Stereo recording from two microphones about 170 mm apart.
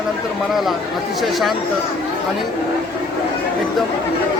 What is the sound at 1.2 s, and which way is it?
Speech, centre (ahead or behind).